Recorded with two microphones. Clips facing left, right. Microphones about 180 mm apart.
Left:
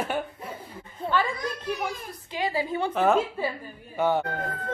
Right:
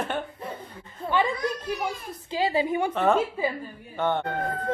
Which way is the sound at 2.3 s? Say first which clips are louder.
Right 3 dB; 25° right (ahead or behind).